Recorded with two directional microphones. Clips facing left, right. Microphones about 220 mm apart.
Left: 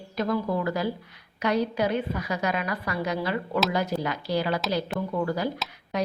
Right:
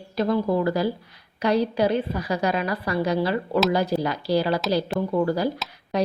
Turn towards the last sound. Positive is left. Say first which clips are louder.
# right 4 dB
turn(degrees=-35)  # may be behind; listen again after turning